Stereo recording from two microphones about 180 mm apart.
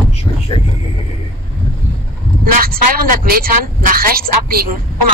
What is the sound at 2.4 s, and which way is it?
A man's voice, 55° right (ahead or behind).